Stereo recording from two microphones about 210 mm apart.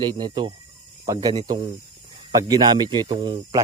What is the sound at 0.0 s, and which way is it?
A man's voice, 20° right (ahead or behind).